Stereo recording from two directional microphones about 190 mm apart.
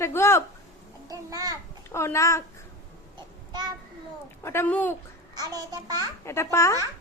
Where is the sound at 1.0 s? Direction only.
20° right (ahead or behind).